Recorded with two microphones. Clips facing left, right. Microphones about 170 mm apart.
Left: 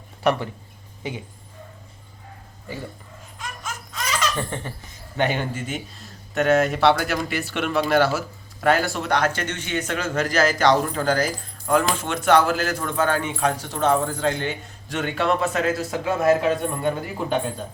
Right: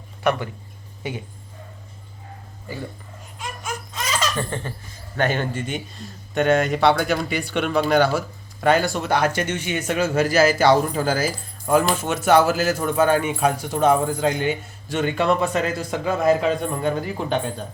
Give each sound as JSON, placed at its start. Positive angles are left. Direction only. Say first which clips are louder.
{"t": 4.4, "sound": "laughter", "louder": "right 2 dB", "side_deg": 20}
{"t": 5.1, "sound": "a man's voice", "louder": "right 1 dB", "side_deg": 15}
{"t": 14.8, "sound": "a man's voice", "louder": "right 2 dB", "side_deg": 0}